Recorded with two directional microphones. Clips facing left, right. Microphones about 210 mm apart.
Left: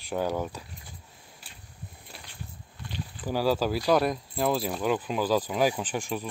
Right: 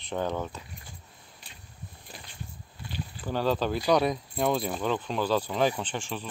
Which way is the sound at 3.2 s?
10° left (ahead or behind).